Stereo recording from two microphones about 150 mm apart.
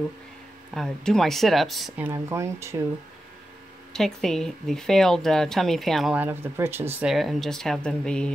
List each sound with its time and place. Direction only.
0.7 s speech: 5° left (ahead or behind)
2.0 s speech: 15° right (ahead or behind)
3.9 s speech: 5° left (ahead or behind)
6.1 s speech: 15° right (ahead or behind)
7.1 s speech: centre (ahead or behind)